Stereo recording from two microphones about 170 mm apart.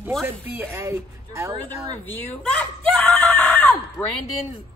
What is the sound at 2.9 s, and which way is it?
Screaming, 5° left (ahead or behind).